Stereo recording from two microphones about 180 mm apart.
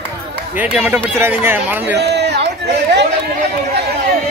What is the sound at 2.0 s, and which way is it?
Chatter, 70° right (ahead or behind).